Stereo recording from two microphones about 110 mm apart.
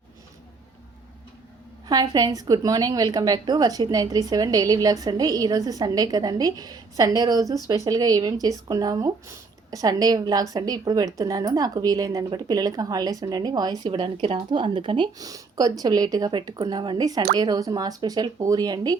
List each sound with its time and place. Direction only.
1.9 s a woman's voice: 35° right (ahead or behind)